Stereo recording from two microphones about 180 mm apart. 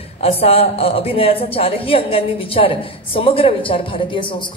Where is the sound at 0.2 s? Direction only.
35° left (ahead or behind).